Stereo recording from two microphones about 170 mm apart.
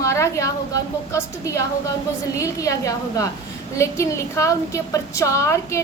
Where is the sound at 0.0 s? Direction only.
15° left (ahead or behind).